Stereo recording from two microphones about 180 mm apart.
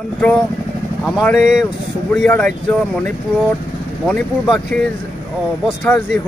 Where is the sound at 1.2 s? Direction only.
5° left (ahead or behind).